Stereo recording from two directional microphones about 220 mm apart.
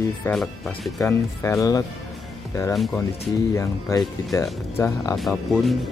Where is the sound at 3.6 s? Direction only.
15° left (ahead or behind).